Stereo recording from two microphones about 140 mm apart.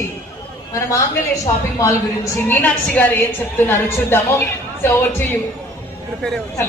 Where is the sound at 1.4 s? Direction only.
20° left (ahead or behind).